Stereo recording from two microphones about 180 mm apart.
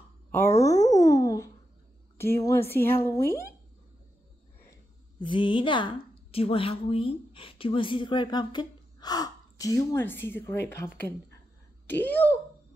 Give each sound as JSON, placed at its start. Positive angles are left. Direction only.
{"t": 0.3, "sound": "a woman's voice", "side_deg": 15}
{"t": 0.7, "sound": "music", "side_deg": 40}
{"t": 1.0, "sound": "a sound", "side_deg": 20}
{"t": 2.1, "sound": "a woman's voice", "side_deg": 15}
{"t": 5.2, "sound": "a woman's voice", "side_deg": 25}